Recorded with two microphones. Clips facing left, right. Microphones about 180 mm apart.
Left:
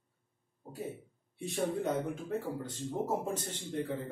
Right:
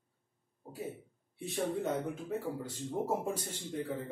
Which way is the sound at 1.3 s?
Centre (ahead or behind).